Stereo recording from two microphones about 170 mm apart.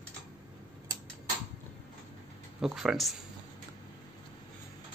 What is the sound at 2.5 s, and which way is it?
Speech, centre (ahead or behind).